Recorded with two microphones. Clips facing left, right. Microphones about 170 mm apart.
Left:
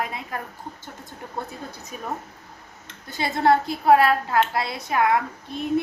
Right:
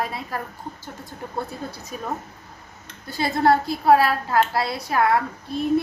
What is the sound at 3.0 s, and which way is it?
Speech, 20° left (ahead or behind).